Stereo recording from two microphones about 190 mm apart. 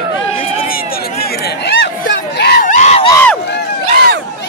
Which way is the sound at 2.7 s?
35° left (ahead or behind).